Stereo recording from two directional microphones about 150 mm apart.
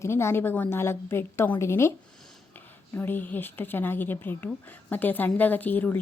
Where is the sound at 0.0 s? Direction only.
15° left (ahead or behind).